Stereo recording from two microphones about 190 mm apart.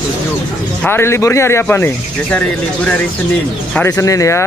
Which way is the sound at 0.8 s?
10° left (ahead or behind).